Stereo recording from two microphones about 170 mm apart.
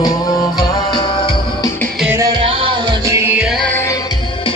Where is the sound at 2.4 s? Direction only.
35° right (ahead or behind).